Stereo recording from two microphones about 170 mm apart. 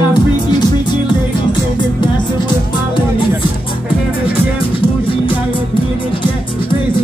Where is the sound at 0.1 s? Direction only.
25° left (ahead or behind).